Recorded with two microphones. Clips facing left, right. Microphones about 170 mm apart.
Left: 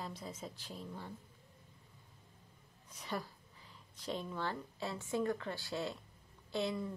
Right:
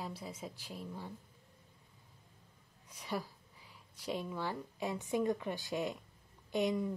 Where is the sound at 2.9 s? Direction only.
10° right (ahead or behind).